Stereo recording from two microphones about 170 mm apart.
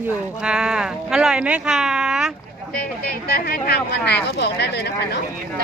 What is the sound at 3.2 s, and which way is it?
Speech, 70° left (ahead or behind).